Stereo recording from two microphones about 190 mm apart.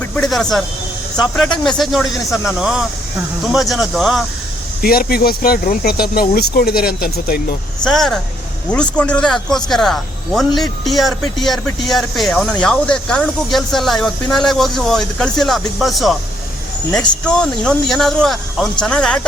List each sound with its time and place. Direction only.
0.0 s vehicle: centre (ahead or behind)
1.1 s speech: centre (ahead or behind)
4.8 s speech: 50° left (ahead or behind)
7.9 s speech: centre (ahead or behind)